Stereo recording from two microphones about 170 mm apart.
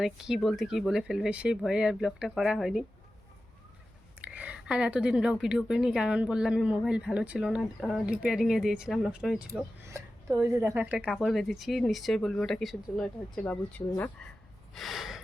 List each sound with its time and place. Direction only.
0.0 s a woman's voice: centre (ahead or behind)
4.2 s a woman's voice: 10° right (ahead or behind)
9.8 s a sound: 15° right (ahead or behind)
10.4 s a woman's voice: 15° right (ahead or behind); by 14.1 s 10° left (ahead or behind)
14.8 s a woman's voice: centre (ahead or behind)